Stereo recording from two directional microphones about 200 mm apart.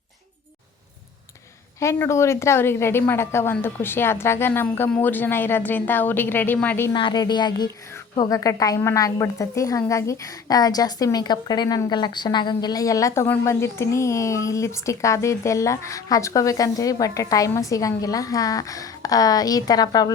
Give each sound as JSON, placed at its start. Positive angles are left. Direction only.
{"t": 1.8, "sound": "a woman's voice", "side_deg": 15}
{"t": 6.9, "sound": "a woman's voice", "side_deg": 20}